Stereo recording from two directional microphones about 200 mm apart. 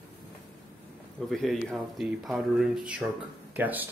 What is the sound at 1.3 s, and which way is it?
Speech, centre (ahead or behind).